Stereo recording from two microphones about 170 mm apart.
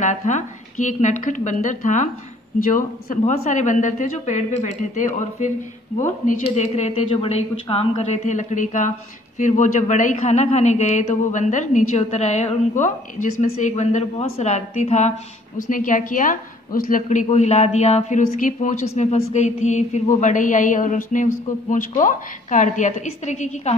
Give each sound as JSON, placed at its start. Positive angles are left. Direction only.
{"t": 0.0, "sound": "a woman's voice", "side_deg": 45}
{"t": 3.1, "sound": "a woman's voice", "side_deg": 50}
{"t": 7.9, "sound": "a woman's voice", "side_deg": 45}